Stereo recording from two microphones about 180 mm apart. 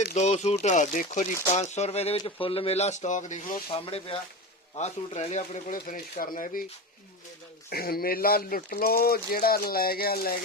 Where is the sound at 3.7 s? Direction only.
30° left (ahead or behind); by 6.6 s 50° left (ahead or behind).